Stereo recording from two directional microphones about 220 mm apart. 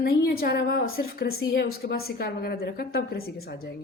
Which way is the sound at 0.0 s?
45° left (ahead or behind).